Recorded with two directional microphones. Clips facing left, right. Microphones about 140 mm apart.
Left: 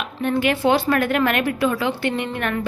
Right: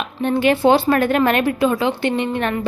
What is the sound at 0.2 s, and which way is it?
A woman's voice, 30° right (ahead or behind).